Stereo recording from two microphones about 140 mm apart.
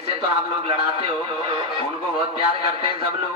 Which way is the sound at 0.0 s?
40° right (ahead or behind).